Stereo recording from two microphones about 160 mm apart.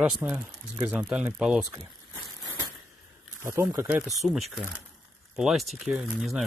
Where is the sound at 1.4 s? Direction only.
5° right (ahead or behind).